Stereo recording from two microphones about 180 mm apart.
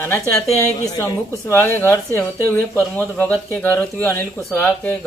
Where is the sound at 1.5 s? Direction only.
10° left (ahead or behind).